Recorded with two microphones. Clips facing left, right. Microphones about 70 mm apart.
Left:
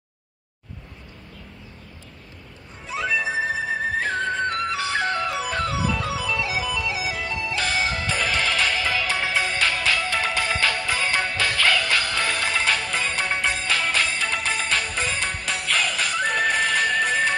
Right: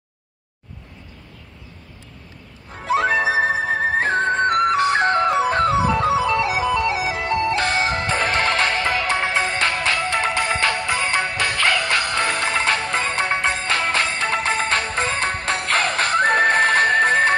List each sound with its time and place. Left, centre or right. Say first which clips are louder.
2.7 s music: right 7 dB; right
3.7 s music: right 5 dB; right